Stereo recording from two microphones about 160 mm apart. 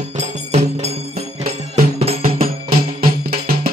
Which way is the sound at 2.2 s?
65° right (ahead or behind).